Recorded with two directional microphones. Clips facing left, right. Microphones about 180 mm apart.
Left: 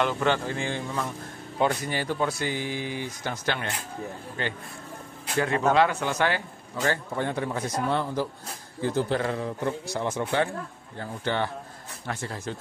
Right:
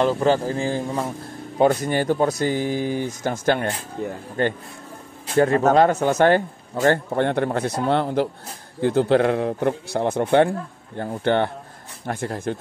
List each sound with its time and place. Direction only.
0.0 s a man's voice: 35° right (ahead or behind)
4.0 s a man's voice: 75° right (ahead or behind)
4.4 s speech: 50° right (ahead or behind)
7.2 s a man's voice: 65° right (ahead or behind)